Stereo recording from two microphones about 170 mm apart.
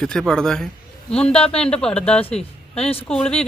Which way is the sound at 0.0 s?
5° left (ahead or behind).